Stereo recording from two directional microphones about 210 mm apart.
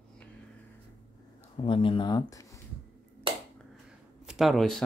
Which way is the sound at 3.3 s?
25° right (ahead or behind).